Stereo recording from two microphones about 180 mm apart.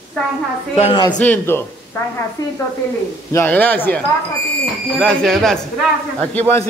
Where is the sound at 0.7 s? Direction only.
30° left (ahead or behind).